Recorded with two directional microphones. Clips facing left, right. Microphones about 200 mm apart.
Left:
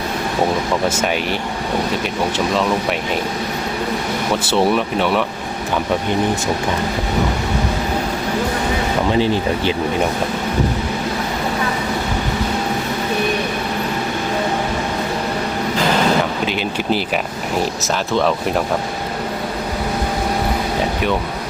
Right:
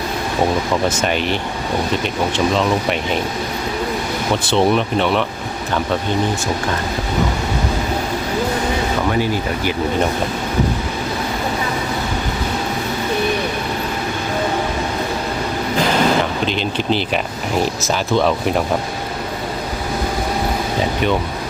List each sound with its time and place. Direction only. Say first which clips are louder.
0.9 s speech: right 1 dB; 5° left (ahead or behind)
4.4 s speech: right 1 dB; 5° left (ahead or behind)
9.1 s speech: left 2 dB; 25° left (ahead or behind)
17.8 s speech: right 1 dB; centre (ahead or behind)